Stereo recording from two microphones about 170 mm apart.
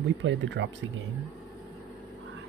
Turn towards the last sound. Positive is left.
turn(degrees=-90)